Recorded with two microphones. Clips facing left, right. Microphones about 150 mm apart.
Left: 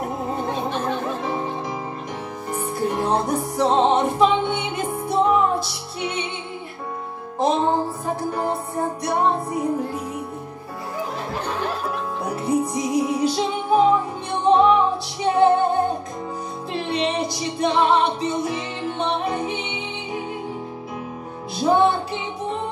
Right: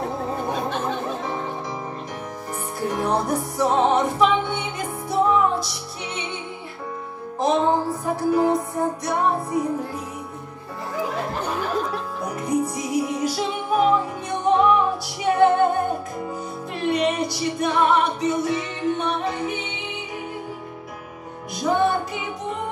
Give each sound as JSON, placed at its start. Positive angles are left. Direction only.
{"t": 0.0, "sound": "music", "side_deg": 20}
{"t": 2.8, "sound": "music", "side_deg": 20}
{"t": 7.3, "sound": "music", "side_deg": 25}
{"t": 12.2, "sound": "music", "side_deg": 30}
{"t": 21.5, "sound": "music", "side_deg": 25}